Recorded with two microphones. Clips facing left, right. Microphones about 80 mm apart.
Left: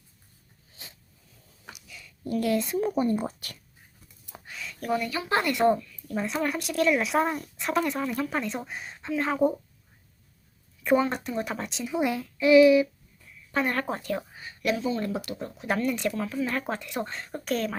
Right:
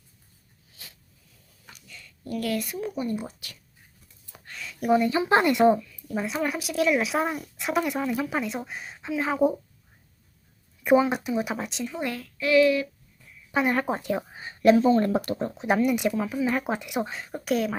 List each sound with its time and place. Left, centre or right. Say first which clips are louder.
0.8 s a sound: left 1 dB; left
1.7 s a sound: even; centre
2.2 s a woman's voice: left 3 dB; left
2.9 s speech: left 4 dB; left
4.5 s a sound: even; centre
4.8 s speech: right 7 dB; right
5.7 s speech: right 1 dB; centre
10.8 s speech: right 3 dB; centre
11.9 s speech: left 8 dB; centre
13.5 s speech: right 3 dB; centre; by 15.6 s right
15.6 s speech: right 4 dB; centre